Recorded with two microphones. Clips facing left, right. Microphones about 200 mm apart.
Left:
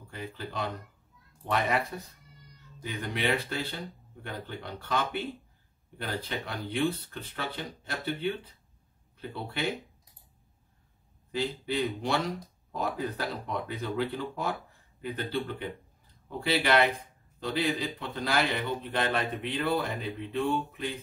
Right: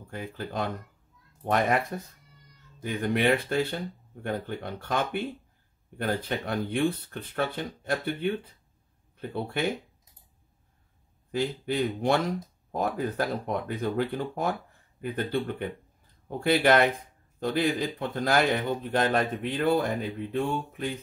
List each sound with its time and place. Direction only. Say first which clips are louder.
0.1 s a man's voice: right 4 dB; 50° right (ahead or behind)
2.8 s a man's voice: right 7 dB; 50° right (ahead or behind)
9.3 s a man's voice: right 5 dB; 50° right (ahead or behind)
11.3 s a man's voice: right 3 dB; 50° right (ahead or behind)